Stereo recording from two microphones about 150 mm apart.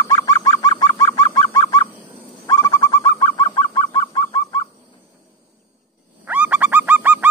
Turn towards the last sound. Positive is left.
turn(degrees=-10)  # may be behind; listen again after turning